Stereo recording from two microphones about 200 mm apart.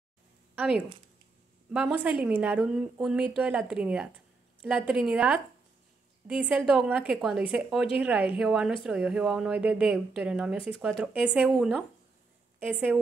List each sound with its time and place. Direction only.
0.6 s speech: 5° right (ahead or behind)
2.2 s a woman's voice: 5° right (ahead or behind)